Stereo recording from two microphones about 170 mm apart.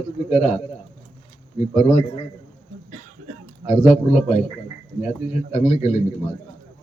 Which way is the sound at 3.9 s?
40° left (ahead or behind).